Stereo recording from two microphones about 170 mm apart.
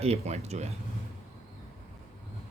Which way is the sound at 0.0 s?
40° right (ahead or behind).